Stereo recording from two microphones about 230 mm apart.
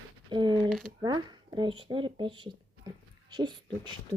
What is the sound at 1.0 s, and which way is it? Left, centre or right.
Speech, centre.